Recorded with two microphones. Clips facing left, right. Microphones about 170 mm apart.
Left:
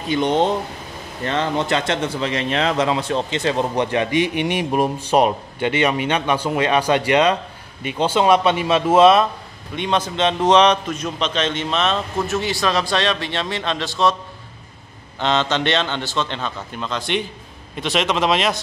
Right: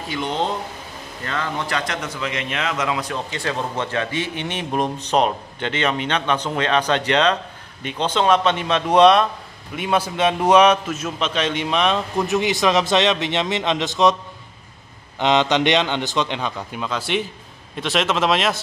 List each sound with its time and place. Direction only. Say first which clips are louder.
0.1 s speech: left 6 dB; 20° left (ahead or behind); by 9.3 s 5° left (ahead or behind)
9.8 s a man's voice: even; 10° right (ahead or behind)
15.1 s a man's voice: right 2 dB; 15° right (ahead or behind); by 18.6 s centre (ahead or behind)